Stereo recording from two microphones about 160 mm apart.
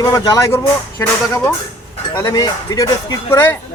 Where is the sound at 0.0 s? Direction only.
25° left (ahead or behind).